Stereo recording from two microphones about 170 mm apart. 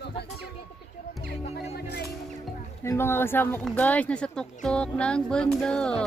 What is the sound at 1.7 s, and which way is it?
Music, 70° left (ahead or behind).